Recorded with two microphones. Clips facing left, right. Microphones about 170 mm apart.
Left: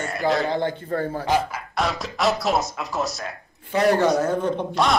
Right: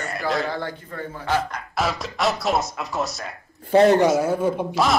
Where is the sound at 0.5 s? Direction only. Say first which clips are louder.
Left 5 dB; 20° left (ahead or behind).